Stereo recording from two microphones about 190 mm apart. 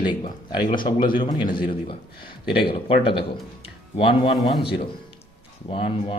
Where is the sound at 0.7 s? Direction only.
25° left (ahead or behind).